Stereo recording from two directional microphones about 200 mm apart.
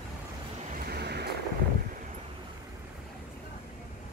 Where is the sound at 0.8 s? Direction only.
55° right (ahead or behind).